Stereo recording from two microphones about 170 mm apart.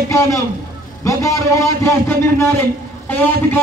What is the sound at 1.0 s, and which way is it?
A man's voice, 20° left (ahead or behind).